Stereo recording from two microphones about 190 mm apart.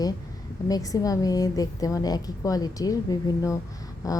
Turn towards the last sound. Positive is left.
turn(degrees=15)  # may be behind; listen again after turning